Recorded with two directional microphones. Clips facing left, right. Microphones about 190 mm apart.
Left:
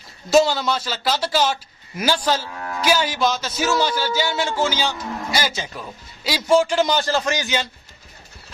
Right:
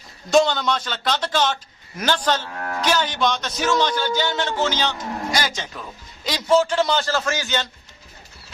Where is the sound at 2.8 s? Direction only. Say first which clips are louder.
Left 2 dB; 10° left (ahead or behind).